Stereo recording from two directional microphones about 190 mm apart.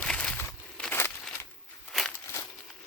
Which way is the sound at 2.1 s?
15° left (ahead or behind).